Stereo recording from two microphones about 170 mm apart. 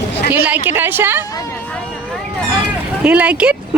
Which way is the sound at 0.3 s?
10° right (ahead or behind).